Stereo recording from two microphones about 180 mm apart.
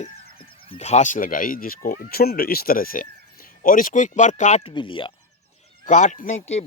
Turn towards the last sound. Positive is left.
turn(degrees=40)  # may be behind; listen again after turning